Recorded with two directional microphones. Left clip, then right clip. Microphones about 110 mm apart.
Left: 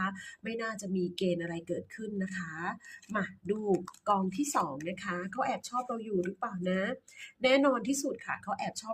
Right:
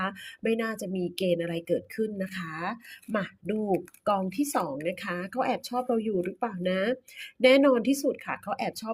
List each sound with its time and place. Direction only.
0.0 s speech: 35° right (ahead or behind)